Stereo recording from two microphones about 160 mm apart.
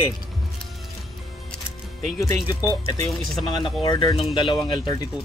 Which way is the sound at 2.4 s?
25° left (ahead or behind).